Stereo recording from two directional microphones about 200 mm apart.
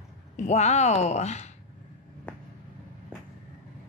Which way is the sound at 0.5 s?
35° left (ahead or behind).